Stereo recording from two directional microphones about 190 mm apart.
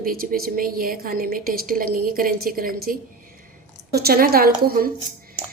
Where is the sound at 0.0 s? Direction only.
50° right (ahead or behind).